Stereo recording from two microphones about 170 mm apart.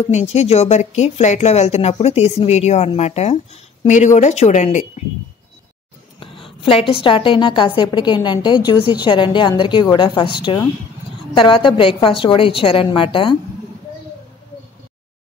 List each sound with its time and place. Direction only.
0.0 s speech: 40° left (ahead or behind)
6.1 s a woman's voice: 30° left (ahead or behind)